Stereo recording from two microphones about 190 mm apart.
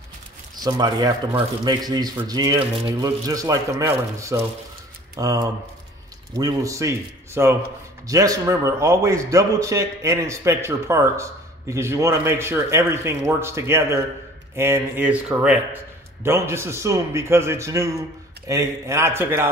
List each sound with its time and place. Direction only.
0.6 s a man's voice: 20° right (ahead or behind)